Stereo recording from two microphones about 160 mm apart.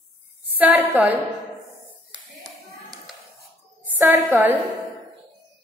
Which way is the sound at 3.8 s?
10° right (ahead or behind).